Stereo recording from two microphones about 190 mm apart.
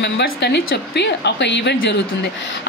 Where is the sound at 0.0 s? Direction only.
60° left (ahead or behind).